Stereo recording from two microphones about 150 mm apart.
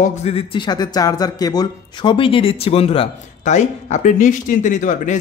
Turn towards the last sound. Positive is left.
turn(degrees=55)  # may be behind; listen again after turning